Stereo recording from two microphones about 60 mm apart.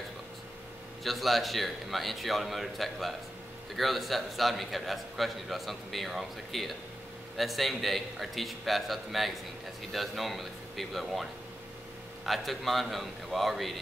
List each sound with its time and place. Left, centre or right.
1.0 s a man's voice: centre
12.3 s a man's voice: centre